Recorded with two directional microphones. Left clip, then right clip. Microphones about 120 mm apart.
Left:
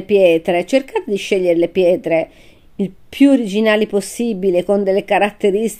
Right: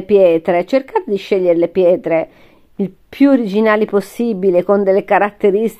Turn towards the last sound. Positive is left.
turn(degrees=-60)  # may be behind; listen again after turning